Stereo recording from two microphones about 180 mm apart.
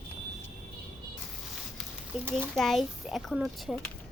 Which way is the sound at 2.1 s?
Centre (ahead or behind).